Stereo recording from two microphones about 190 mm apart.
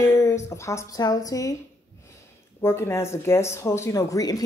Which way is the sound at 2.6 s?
15° left (ahead or behind).